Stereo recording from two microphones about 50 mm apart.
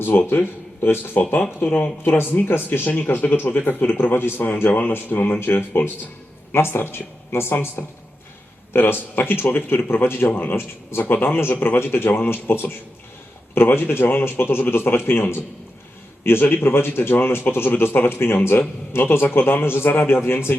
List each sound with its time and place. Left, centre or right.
0.0 s a man's voice: left
6.5 s speech: left
7.8 s a man's voice: left
8.7 s speech: left
11.5 s a man's voice: left
11.8 s speech: left